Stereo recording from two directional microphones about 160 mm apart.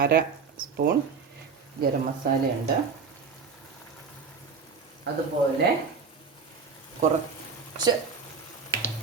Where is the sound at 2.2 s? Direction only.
70° right (ahead or behind).